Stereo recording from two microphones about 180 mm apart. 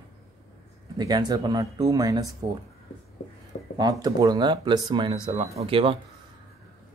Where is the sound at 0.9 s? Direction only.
20° right (ahead or behind).